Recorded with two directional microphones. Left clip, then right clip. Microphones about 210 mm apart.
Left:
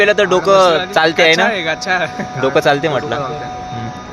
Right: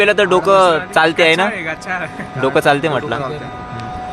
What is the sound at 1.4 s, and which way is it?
Speech, 45° left (ahead or behind).